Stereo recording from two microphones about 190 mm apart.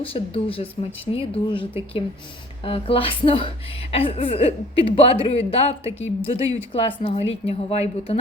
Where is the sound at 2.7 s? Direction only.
30° left (ahead or behind).